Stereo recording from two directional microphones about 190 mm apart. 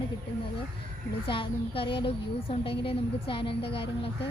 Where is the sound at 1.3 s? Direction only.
30° left (ahead or behind).